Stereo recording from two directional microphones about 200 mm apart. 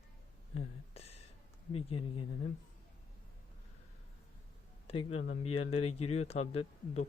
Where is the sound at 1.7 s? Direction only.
30° left (ahead or behind).